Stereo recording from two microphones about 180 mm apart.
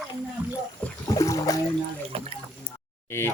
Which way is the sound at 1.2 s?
20° left (ahead or behind).